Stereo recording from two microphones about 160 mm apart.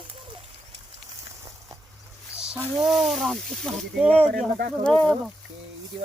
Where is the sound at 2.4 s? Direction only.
5° right (ahead or behind).